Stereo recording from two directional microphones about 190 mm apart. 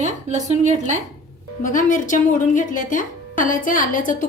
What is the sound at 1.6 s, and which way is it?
Speech, 45° left (ahead or behind).